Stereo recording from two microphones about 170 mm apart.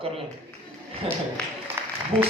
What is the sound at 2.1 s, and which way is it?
Speech, 30° right (ahead or behind).